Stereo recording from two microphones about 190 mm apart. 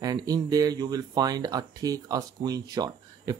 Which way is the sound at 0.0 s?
20° right (ahead or behind).